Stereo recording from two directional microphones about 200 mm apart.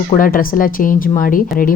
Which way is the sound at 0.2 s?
45° left (ahead or behind).